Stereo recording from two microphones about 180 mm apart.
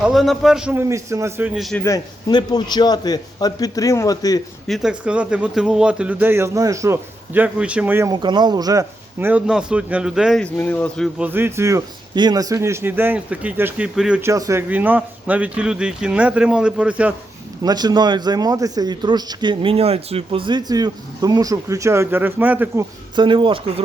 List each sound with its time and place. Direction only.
0.0 s a man's voice: centre (ahead or behind)
1.8 s a man's voice: 20° left (ahead or behind)
4.6 s a man's voice: centre (ahead or behind)
10.4 s speech: 10° left (ahead or behind)
11.2 s a man's voice: 10° right (ahead or behind)
14.2 s a man's voice: 15° right (ahead or behind)
17.6 s speech: 20° right (ahead or behind)
23.1 s speech: 25° right (ahead or behind)